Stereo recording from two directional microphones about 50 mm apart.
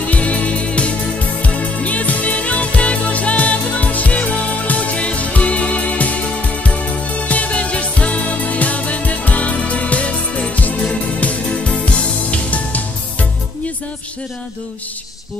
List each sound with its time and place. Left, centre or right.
0.1 s music: left
10.8 s organ: left
11.8 s music: left